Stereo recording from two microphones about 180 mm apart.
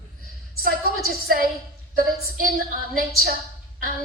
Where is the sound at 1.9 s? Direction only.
55° right (ahead or behind).